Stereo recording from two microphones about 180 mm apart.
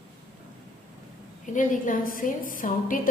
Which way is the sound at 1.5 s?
45° left (ahead or behind).